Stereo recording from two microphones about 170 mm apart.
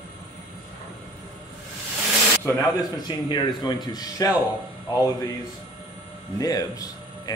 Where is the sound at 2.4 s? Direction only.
15° left (ahead or behind).